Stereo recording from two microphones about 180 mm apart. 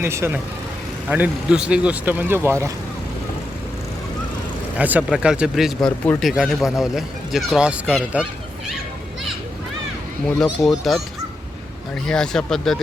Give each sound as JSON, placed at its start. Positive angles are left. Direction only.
{"t": 0.0, "sound": "speech", "side_deg": -15}
{"t": 4.8, "sound": "speech", "side_deg": -5}
{"t": 10.7, "sound": "speech", "side_deg": 0}
{"t": 12.0, "sound": "speech", "side_deg": 5}